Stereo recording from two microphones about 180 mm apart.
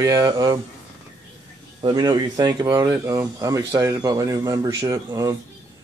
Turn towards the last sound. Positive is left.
turn(degrees=-20)  # may be behind; listen again after turning